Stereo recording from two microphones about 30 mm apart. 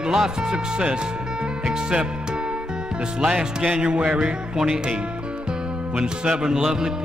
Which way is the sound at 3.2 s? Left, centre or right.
Right.